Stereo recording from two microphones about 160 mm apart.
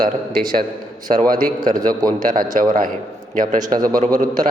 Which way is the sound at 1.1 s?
45° right (ahead or behind).